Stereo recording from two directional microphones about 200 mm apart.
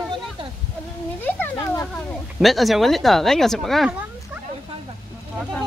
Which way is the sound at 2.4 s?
Centre (ahead or behind).